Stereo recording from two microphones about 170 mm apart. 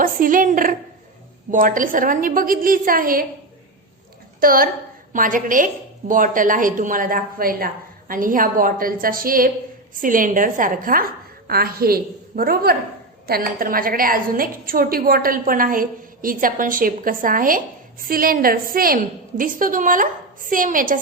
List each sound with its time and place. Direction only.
0.0 s a woman's voice: 55° right (ahead or behind)
4.4 s a woman's voice: 60° right (ahead or behind)